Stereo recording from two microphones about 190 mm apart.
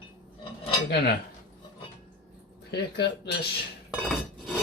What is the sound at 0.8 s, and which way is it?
Speech, 60° left (ahead or behind).